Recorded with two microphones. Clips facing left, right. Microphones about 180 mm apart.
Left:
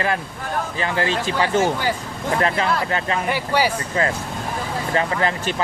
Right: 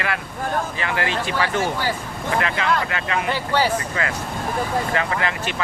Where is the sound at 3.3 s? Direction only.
10° left (ahead or behind).